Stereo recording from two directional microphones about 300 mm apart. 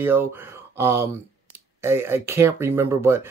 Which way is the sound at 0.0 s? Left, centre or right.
Centre.